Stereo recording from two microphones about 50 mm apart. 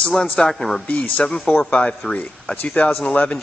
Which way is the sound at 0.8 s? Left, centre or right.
Left.